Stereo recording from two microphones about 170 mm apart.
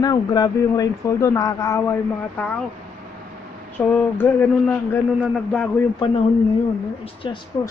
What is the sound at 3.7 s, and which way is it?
Speech, 10° left (ahead or behind).